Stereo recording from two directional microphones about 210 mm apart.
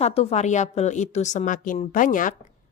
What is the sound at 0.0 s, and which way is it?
A woman's voice, 30° left (ahead or behind).